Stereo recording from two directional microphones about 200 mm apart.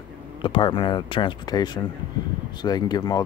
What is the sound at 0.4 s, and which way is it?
Speech, 25° left (ahead or behind).